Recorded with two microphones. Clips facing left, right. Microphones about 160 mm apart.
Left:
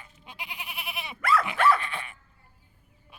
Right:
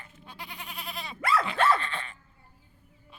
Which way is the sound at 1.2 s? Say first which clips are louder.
Left 2 dB; 25° right (ahead or behind).